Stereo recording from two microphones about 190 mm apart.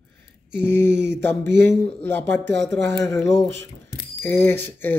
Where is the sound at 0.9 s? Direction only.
65° right (ahead or behind).